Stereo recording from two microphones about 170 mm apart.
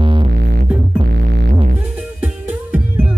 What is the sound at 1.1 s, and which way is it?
Music, 90° right.